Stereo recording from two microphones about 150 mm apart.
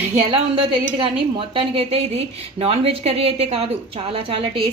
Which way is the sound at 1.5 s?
40° right (ahead or behind).